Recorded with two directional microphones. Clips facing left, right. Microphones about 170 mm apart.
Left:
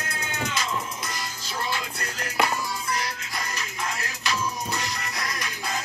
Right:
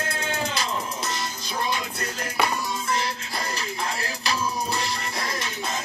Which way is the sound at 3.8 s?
30° right (ahead or behind).